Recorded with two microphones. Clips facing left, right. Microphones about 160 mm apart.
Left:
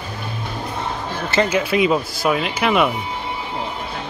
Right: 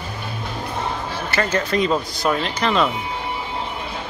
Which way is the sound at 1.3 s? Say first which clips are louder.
Left 3 dB; 15° left (ahead or behind).